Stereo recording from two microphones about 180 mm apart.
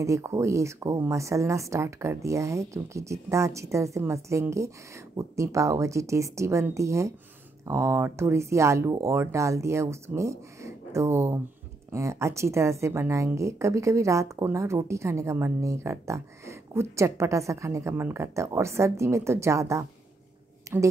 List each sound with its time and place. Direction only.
0.0 s speech: 15° right (ahead or behind)